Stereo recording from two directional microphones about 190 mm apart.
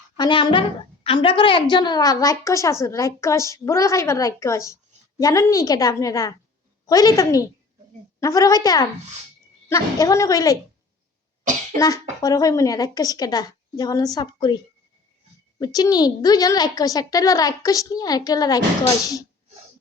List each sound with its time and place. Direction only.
0.2 s a woman's voice: 25° left (ahead or behind)
11.8 s a woman's voice: 20° left (ahead or behind)